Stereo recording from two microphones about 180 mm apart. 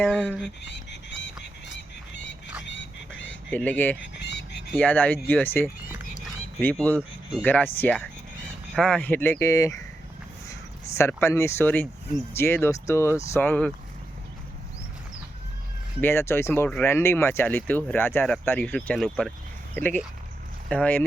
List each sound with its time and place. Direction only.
0.0 s speech: 5° left (ahead or behind)
0.6 s speech: 75° left (ahead or behind)
2.6 s a sound: 90° left
3.5 s speech: 10° left (ahead or behind)
4.0 s a sound: 70° left (ahead or behind)
4.7 s speech: 10° left (ahead or behind)
16.0 s speech: 15° left (ahead or behind)